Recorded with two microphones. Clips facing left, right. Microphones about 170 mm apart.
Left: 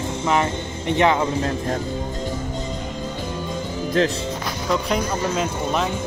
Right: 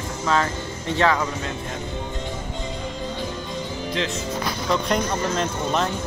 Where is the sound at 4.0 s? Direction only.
45° left (ahead or behind).